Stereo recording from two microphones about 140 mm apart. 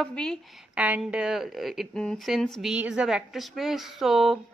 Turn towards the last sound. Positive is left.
turn(degrees=0)  # may be behind; listen again after turning